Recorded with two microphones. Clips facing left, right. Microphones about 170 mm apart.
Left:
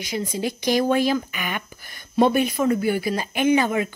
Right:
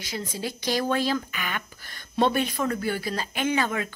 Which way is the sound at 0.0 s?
15° left (ahead or behind).